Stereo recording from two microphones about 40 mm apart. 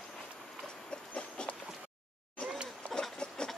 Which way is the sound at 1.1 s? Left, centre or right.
Left.